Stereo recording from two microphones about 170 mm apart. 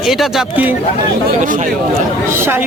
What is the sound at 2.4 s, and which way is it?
Speech, 10° right (ahead or behind).